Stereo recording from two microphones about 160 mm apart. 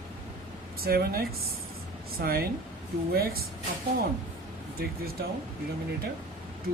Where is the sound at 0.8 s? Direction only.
70° right (ahead or behind).